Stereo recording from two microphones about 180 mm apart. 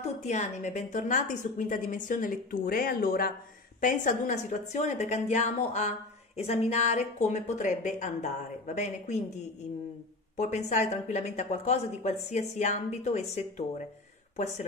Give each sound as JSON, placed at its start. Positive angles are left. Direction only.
{"t": 0.2, "sound": "a woman's voice", "side_deg": 40}
{"t": 10.3, "sound": "speech", "side_deg": 40}